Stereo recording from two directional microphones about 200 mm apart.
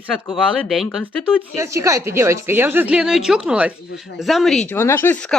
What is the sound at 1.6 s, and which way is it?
A man's voice, 15° right (ahead or behind).